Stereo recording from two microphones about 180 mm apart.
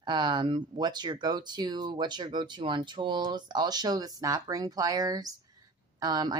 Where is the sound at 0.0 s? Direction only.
25° right (ahead or behind).